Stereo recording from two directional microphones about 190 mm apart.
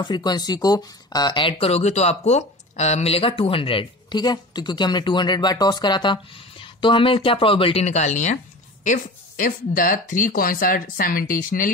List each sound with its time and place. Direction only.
0.0 s speech: 20° left (ahead or behind); by 11.7 s 45° left (ahead or behind)